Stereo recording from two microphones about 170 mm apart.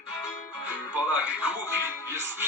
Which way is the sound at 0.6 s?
5° right (ahead or behind).